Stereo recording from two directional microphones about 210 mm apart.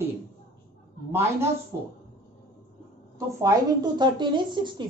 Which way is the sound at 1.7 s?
15° right (ahead or behind).